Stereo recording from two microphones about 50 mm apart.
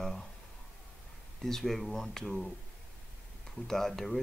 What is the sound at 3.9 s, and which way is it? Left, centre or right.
Speech, centre.